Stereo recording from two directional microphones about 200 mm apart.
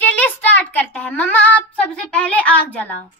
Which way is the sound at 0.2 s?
10° left (ahead or behind).